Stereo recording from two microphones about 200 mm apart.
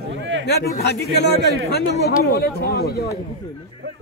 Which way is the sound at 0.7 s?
55° left (ahead or behind).